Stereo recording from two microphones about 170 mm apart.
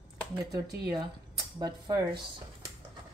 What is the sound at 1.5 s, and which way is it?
Speech, 25° right (ahead or behind).